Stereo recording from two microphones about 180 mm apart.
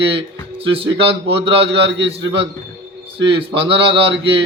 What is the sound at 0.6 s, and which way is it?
A man's voice, 30° right (ahead or behind).